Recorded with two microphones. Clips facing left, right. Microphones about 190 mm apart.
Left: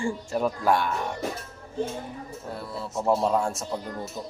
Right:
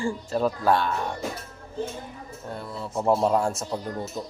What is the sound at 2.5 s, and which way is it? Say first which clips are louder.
Speech: right 2 dB; 5° left (ahead or behind).